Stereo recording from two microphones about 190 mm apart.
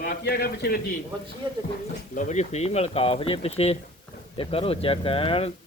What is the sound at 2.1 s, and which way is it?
Speech, 40° left (ahead or behind).